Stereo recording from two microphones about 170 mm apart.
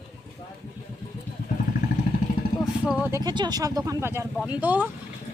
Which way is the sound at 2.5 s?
65° right (ahead or behind).